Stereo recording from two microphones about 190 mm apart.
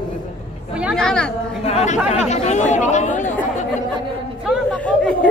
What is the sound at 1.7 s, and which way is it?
Speech, 35° left (ahead or behind).